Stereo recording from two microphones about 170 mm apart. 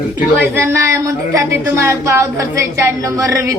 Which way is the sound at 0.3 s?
15° right (ahead or behind).